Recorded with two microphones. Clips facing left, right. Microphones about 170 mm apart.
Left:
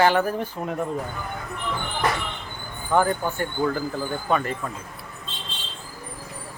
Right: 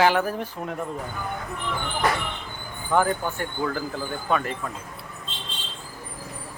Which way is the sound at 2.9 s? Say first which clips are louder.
Left 1 dB; centre (ahead or behind).